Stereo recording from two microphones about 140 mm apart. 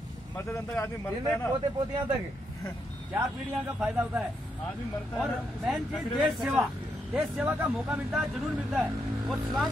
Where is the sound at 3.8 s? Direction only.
10° right (ahead or behind).